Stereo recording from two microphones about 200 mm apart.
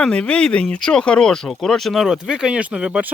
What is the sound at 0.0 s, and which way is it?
Speech, 5° left (ahead or behind).